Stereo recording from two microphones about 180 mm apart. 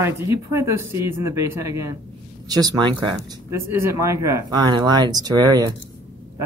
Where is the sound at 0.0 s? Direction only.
15° right (ahead or behind).